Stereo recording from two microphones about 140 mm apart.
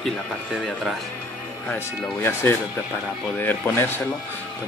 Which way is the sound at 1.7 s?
15° left (ahead or behind).